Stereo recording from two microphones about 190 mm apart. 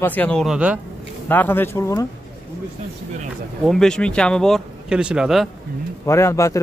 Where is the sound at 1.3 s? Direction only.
10° left (ahead or behind).